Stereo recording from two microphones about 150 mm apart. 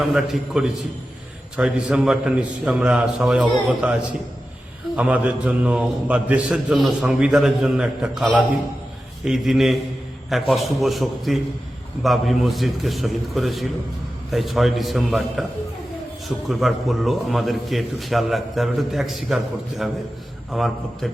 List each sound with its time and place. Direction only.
0.0 s a man's voice: 5° right (ahead or behind)
4.9 s a man's voice: 10° right (ahead or behind)
16.5 s a man's voice: centre (ahead or behind)
20.5 s a man's voice: centre (ahead or behind)